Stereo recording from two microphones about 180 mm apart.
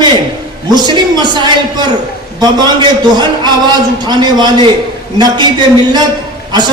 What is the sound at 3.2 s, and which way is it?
A man's voice, 25° right (ahead or behind).